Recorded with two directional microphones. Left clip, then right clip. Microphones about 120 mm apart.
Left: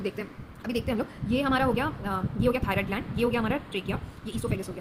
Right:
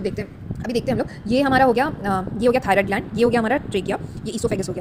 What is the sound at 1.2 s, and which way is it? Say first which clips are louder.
Speech: right 10 dB; 55° right (ahead or behind).